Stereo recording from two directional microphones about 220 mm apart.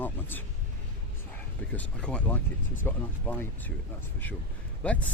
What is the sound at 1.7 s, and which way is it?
Speech, 5° left (ahead or behind).